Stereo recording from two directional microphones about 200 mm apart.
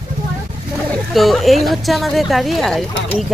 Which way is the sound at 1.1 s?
Centre (ahead or behind).